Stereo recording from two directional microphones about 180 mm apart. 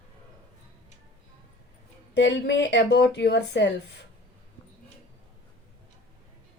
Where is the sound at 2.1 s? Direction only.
80° left.